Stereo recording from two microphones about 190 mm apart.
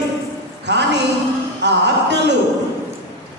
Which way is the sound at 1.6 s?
65° right (ahead or behind).